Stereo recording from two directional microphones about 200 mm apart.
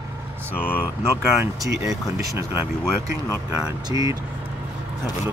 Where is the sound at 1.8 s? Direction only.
15° right (ahead or behind).